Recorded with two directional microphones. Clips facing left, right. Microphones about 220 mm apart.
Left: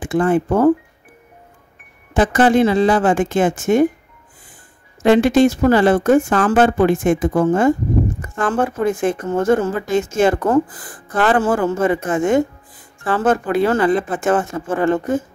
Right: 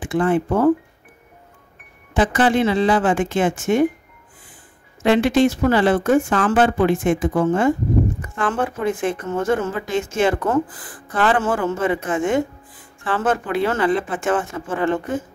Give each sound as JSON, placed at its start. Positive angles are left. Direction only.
{"t": 0.0, "sound": "speech", "side_deg": 45}
{"t": 2.1, "sound": "speech", "side_deg": 45}
{"t": 5.0, "sound": "speech", "side_deg": 45}